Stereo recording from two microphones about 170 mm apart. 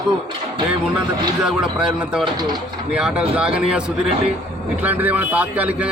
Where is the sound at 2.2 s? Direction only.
25° right (ahead or behind).